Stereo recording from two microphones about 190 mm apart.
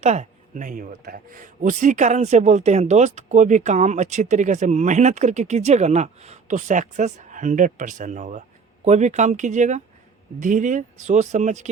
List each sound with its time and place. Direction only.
0.0 s speech: 35° right (ahead or behind)